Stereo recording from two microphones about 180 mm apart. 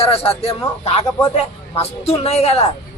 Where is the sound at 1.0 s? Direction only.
20° left (ahead or behind).